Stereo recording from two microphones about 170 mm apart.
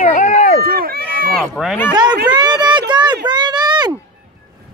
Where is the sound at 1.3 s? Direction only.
Centre (ahead or behind).